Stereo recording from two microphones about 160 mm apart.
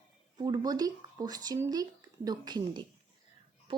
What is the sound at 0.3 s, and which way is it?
A woman's voice, 25° right (ahead or behind).